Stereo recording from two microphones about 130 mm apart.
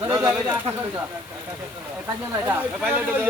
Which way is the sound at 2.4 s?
10° right (ahead or behind).